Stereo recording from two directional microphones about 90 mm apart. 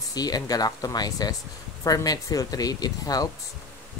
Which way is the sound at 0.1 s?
45° left (ahead or behind).